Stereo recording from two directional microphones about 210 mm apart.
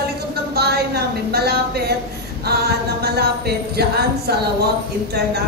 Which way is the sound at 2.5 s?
50° right (ahead or behind).